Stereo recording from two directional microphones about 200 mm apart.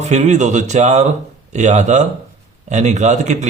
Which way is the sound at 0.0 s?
35° right (ahead or behind).